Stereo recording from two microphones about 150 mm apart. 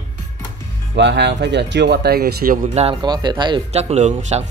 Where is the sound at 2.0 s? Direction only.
90° right; by 2.7 s 70° right (ahead or behind).